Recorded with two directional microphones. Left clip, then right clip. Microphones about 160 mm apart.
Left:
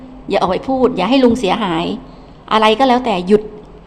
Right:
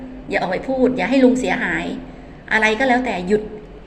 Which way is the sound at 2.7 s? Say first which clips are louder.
Left 5 dB; 35° left (ahead or behind).